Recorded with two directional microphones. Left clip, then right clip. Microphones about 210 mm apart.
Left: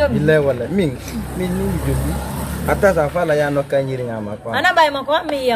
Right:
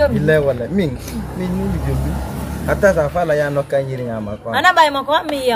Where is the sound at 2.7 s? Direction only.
10° left (ahead or behind).